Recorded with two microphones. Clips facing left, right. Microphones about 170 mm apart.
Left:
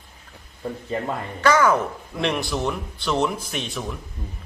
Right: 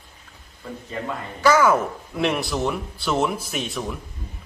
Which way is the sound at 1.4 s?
5° right (ahead or behind).